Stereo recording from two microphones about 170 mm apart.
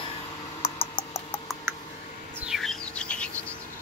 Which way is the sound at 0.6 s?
35° left (ahead or behind).